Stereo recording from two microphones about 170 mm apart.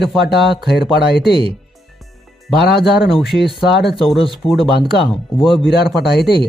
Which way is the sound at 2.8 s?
Centre (ahead or behind).